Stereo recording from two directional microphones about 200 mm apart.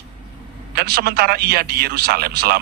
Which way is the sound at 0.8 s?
50° right (ahead or behind).